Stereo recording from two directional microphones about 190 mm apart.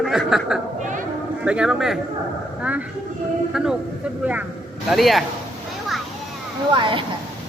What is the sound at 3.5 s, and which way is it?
A man's voice, 5° right (ahead or behind).